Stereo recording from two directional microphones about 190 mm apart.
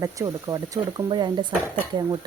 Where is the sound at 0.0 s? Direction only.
15° right (ahead or behind).